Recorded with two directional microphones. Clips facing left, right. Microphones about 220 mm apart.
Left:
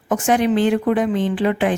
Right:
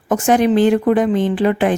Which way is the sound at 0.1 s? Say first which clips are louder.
Right 3 dB; 40° right (ahead or behind).